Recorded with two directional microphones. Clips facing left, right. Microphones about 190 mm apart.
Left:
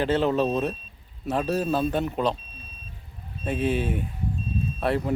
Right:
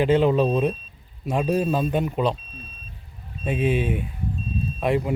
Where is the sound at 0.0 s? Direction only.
10° right (ahead or behind).